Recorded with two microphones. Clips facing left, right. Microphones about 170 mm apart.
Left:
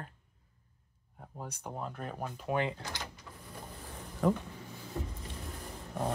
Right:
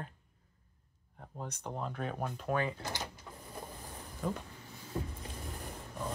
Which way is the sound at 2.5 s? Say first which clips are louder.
Left 1 dB; 20° left (ahead or behind).